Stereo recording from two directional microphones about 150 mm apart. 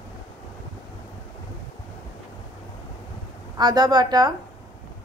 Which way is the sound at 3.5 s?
30° right (ahead or behind).